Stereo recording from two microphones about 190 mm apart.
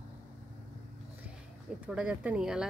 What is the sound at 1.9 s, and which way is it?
Speech, 5° right (ahead or behind).